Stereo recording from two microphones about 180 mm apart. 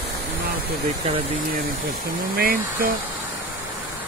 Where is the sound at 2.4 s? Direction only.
55° right (ahead or behind).